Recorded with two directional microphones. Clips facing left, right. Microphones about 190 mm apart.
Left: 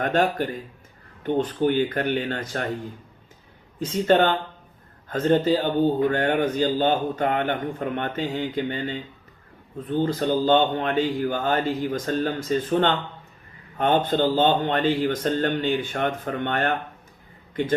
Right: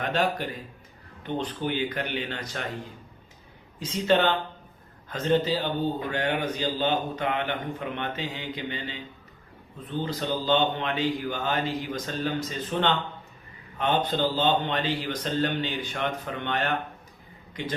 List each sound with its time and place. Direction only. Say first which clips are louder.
0.0 s a man's voice: left 5 dB; 50° left (ahead or behind)
3.8 s a man's voice: left 4 dB; 45° left (ahead or behind)
10.0 s a man's voice: left 7 dB; 50° left (ahead or behind)